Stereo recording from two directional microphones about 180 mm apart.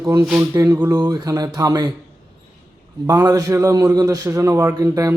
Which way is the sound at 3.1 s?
20° right (ahead or behind).